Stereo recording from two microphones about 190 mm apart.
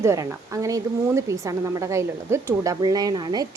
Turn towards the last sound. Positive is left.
turn(degrees=-20)  # may be behind; listen again after turning